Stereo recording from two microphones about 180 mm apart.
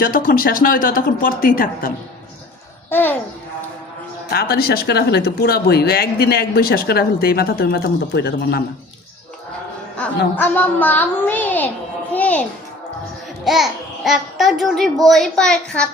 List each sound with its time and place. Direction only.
0.0 s speech: 50° left (ahead or behind)
2.9 s a woman's voice: 10° left (ahead or behind)
4.3 s speech: 60° left (ahead or behind)
10.3 s a woman's voice: 10° left (ahead or behind)
13.4 s a woman's voice: centre (ahead or behind)